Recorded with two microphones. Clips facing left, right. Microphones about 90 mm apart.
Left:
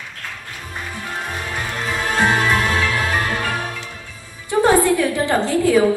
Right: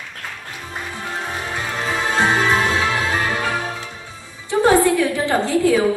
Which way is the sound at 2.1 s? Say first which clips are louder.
Even; 20° right (ahead or behind).